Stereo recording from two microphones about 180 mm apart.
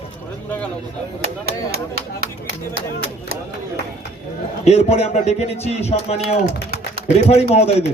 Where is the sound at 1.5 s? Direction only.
60° right (ahead or behind).